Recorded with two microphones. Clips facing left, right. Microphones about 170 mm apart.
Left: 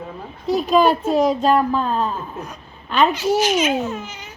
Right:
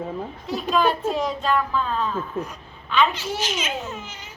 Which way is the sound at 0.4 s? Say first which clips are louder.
Left 6 dB; 40° left (ahead or behind).